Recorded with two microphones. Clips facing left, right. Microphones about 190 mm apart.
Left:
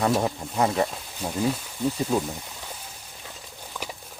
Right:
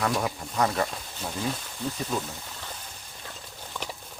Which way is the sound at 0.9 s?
10° left (ahead or behind).